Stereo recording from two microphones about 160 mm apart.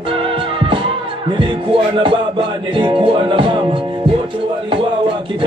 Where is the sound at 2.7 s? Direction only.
35° right (ahead or behind).